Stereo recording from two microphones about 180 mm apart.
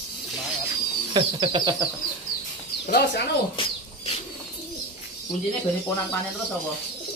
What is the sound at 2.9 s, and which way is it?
Speech, 65° left (ahead or behind).